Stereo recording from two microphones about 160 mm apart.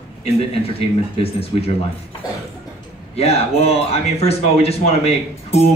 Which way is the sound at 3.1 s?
40° left (ahead or behind).